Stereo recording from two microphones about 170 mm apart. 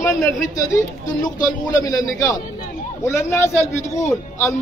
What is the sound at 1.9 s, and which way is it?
A man's voice, 20° left (ahead or behind).